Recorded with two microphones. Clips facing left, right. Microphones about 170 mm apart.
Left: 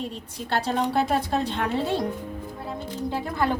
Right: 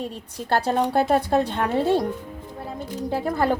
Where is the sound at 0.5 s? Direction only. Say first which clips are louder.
Right 3 dB; 50° right (ahead or behind).